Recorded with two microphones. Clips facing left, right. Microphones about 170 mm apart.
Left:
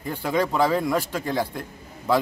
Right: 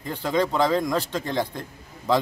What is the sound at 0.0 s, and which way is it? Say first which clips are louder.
Speech: even; 10° left (ahead or behind).